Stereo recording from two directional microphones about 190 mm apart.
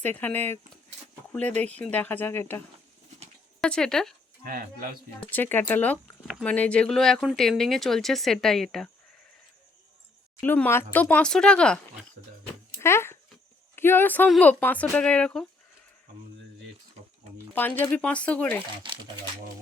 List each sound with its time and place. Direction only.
0.0 s speech: 10° left (ahead or behind)
3.6 s speech: 5° left (ahead or behind)
4.4 s speech: 45° right (ahead or behind)
5.3 s speech: 10° left (ahead or behind)
10.4 s speech: 10° left (ahead or behind)
17.5 s speech: 10° left (ahead or behind)
18.8 s crumpling: 25° right (ahead or behind)